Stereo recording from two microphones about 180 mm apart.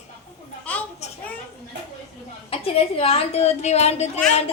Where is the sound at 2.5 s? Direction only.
35° left (ahead or behind).